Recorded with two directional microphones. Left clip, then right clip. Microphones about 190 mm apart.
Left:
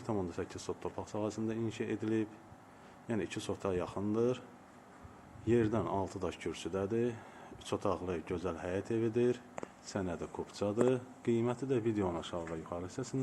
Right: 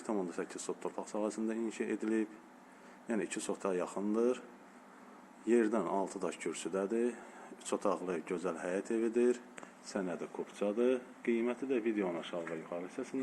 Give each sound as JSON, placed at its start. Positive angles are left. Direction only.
{"t": 0.0, "sound": "speech", "side_deg": 5}
{"t": 5.5, "sound": "speech", "side_deg": 0}
{"t": 9.9, "sound": "speech", "side_deg": 15}